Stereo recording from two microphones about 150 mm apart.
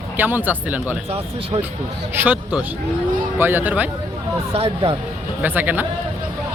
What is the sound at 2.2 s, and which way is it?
Speech, 10° right (ahead or behind).